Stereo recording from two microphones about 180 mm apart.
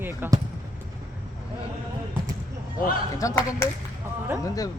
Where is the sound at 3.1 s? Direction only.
15° left (ahead or behind).